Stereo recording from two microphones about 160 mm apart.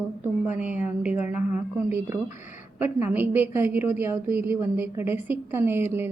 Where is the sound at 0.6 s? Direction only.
10° right (ahead or behind).